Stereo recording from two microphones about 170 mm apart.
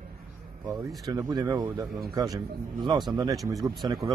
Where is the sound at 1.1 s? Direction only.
20° right (ahead or behind).